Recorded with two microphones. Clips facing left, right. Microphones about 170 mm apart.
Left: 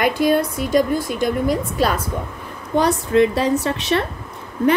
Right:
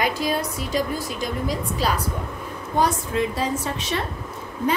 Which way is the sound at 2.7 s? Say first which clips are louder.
Left 6 dB; 70° left (ahead or behind).